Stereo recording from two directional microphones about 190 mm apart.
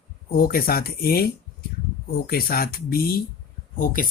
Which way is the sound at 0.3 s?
50° left (ahead or behind).